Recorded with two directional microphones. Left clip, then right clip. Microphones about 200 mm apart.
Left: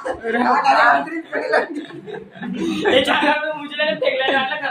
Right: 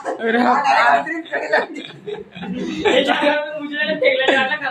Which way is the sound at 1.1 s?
20° right (ahead or behind).